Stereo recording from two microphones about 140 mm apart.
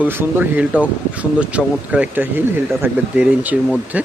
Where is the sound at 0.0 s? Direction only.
15° right (ahead or behind).